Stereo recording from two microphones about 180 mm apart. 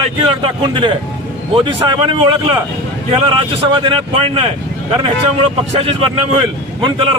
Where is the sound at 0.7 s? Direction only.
25° right (ahead or behind).